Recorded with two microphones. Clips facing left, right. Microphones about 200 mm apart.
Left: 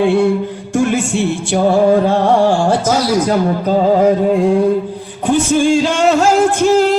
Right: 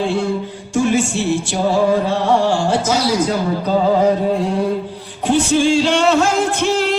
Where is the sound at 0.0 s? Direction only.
60° left (ahead or behind).